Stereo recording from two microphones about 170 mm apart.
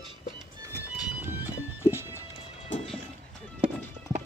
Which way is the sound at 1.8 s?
15° right (ahead or behind).